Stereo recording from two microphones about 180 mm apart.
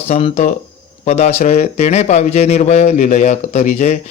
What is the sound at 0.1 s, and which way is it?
A man's voice, 40° left (ahead or behind).